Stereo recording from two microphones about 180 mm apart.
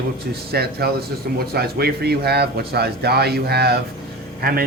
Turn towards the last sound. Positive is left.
turn(degrees=-55)  # may be behind; listen again after turning